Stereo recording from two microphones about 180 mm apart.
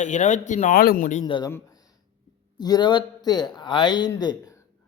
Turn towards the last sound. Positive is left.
turn(degrees=20)  # may be behind; listen again after turning